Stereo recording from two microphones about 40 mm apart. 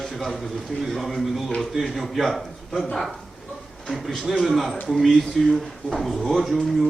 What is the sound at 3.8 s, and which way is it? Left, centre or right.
A man's voice, centre.